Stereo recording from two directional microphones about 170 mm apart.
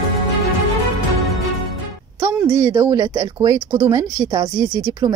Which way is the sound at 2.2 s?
15° right (ahead or behind).